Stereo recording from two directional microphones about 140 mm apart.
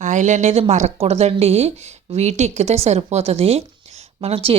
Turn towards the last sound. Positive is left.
turn(degrees=-40)  # may be behind; listen again after turning